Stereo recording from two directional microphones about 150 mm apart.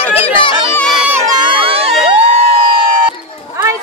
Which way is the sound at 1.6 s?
40° right (ahead or behind).